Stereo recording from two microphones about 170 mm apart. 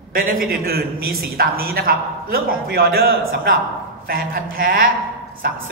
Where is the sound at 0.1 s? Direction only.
55° right (ahead or behind).